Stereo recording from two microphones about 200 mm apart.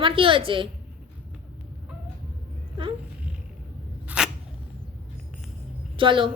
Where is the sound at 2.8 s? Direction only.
25° right (ahead or behind).